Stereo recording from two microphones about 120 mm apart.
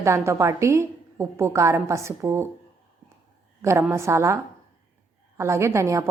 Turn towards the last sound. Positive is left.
turn(degrees=-25)  # may be behind; listen again after turning